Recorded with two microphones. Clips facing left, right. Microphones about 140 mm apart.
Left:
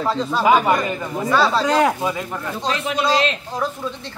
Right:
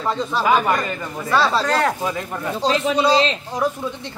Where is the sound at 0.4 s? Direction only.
10° left (ahead or behind).